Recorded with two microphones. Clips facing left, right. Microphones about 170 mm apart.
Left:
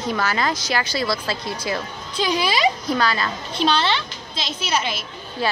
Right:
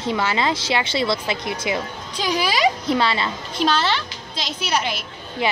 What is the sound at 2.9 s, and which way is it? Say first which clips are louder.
Speech: right 1 dB; 25° right (ahead or behind).